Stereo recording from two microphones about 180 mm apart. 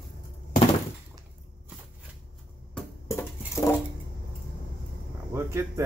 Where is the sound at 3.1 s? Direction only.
15° left (ahead or behind).